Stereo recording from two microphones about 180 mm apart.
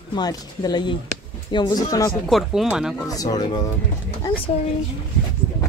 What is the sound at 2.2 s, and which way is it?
Speech, centre (ahead or behind).